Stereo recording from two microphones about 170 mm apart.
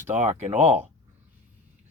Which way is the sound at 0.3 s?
45° right (ahead or behind).